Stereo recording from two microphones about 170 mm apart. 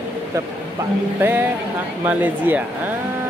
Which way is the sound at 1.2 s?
10° right (ahead or behind).